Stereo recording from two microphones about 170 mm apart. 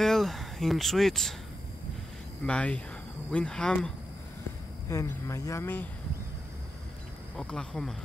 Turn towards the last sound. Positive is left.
turn(degrees=5)  # may be behind; listen again after turning